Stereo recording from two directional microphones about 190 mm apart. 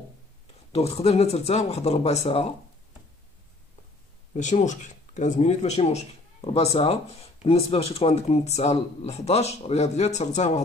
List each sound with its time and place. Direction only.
0.7 s speech: 35° left (ahead or behind)
4.3 s speech: 40° left (ahead or behind)